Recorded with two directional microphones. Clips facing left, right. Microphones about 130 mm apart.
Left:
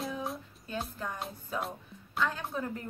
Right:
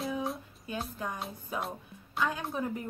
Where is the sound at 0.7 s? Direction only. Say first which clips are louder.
Even; 15° right (ahead or behind).